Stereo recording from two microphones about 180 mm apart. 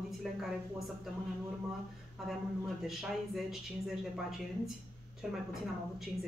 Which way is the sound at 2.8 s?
Centre (ahead or behind).